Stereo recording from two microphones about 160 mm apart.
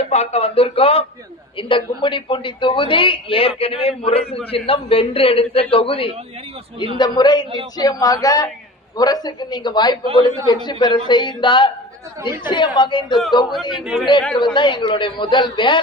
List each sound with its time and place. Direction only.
0.0 s a man's voice: 40° left (ahead or behind)
13.8 s a man's voice: 5° right (ahead or behind)
14.3 s a man's voice: 30° left (ahead or behind)